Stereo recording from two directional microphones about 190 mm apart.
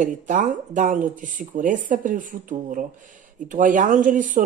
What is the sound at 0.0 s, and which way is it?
Speech, 40° right (ahead or behind).